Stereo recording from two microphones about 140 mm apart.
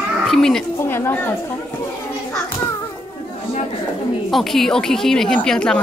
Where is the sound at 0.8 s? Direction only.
15° left (ahead or behind).